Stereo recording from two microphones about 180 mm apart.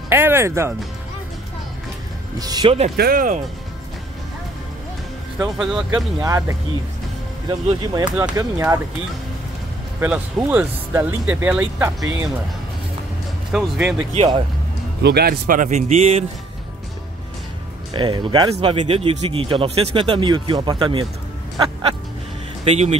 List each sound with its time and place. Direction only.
0.1 s speech: 10° right (ahead or behind)
2.3 s speech: 20° right (ahead or behind)
3.0 s speech: 50° right (ahead or behind)
5.4 s speech: 5° right (ahead or behind)
6.2 s speech: 15° right (ahead or behind)
9.9 s speech: 10° right (ahead or behind)
13.5 s speech: 5° right (ahead or behind)
14.1 s a man's voice: 30° right (ahead or behind)
15.0 s speech: 60° right (ahead or behind); by 16.3 s 35° right (ahead or behind)
17.9 s speech: 25° right (ahead or behind)
22.7 s a man's voice: 35° right (ahead or behind)